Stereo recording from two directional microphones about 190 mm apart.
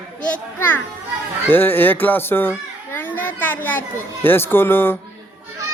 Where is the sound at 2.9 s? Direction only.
10° left (ahead or behind).